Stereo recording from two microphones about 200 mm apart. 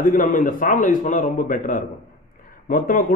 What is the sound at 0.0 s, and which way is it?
A man's voice, 40° left (ahead or behind).